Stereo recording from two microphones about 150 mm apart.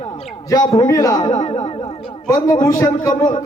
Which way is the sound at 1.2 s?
55° left (ahead or behind).